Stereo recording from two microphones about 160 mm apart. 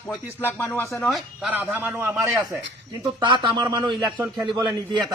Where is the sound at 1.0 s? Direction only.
Centre (ahead or behind).